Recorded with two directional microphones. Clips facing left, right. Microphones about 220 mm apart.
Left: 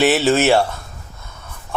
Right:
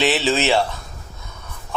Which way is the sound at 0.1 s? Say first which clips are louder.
Left 4 dB; 45° left (ahead or behind).